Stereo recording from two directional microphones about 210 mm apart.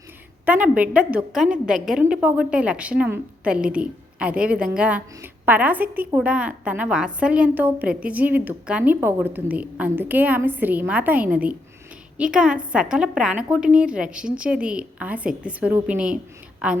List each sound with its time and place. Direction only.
0.4 s a woman's voice: 5° right (ahead or behind)